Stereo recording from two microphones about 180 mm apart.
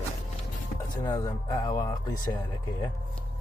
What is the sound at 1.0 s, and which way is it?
Speech, 20° left (ahead or behind).